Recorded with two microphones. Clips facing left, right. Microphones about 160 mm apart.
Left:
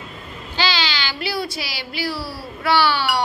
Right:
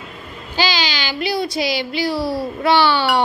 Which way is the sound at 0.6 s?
15° right (ahead or behind).